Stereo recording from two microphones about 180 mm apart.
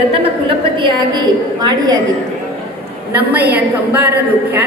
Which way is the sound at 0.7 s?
25° right (ahead or behind).